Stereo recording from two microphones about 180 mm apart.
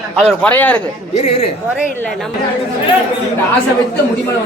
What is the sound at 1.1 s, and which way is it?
Speech, 35° left (ahead or behind).